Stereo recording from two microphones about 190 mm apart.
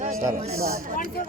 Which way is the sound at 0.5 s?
15° right (ahead or behind).